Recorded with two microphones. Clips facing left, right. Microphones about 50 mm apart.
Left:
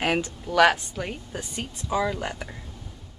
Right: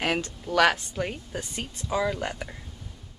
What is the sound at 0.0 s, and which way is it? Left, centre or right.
Speech, centre.